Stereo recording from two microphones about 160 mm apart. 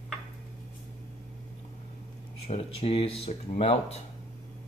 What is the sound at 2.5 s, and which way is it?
Speech, 40° left (ahead or behind).